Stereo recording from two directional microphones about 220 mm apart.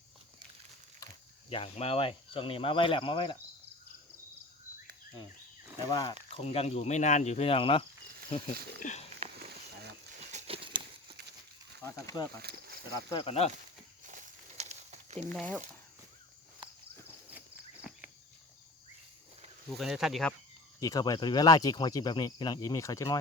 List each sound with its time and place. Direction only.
1.5 s speech: 25° left (ahead or behind)
5.9 s speech: 20° left (ahead or behind)
10.3 s a sound: 25° right (ahead or behind)
11.8 s speech: 15° left (ahead or behind)
12.4 s speech: 45° right (ahead or behind)
13.1 s speech: 20° left (ahead or behind)
14.1 s a sound: 35° right (ahead or behind)
15.3 s speech: 5° left (ahead or behind)
19.7 s speech: centre (ahead or behind)
20.8 s speech: 15° left (ahead or behind)